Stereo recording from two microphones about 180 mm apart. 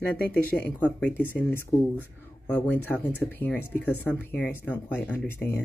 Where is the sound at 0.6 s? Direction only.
10° left (ahead or behind).